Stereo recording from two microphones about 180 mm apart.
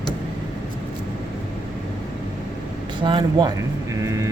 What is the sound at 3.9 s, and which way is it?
Vehicle, 15° right (ahead or behind).